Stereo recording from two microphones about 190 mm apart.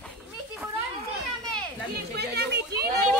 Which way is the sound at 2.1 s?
60° right (ahead or behind).